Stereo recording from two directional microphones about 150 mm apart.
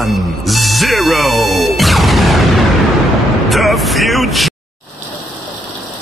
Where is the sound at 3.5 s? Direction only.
Centre (ahead or behind).